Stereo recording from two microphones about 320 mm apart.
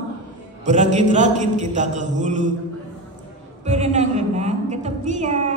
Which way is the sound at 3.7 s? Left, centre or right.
Right.